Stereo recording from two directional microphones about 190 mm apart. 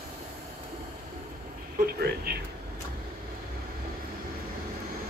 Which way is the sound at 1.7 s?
55° right (ahead or behind).